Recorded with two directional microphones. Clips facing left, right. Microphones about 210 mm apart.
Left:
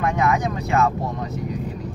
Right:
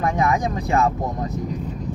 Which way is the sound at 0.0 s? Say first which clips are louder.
Even; 35° right (ahead or behind).